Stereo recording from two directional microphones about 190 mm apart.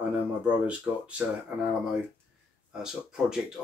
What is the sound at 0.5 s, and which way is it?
Speech, 5° right (ahead or behind).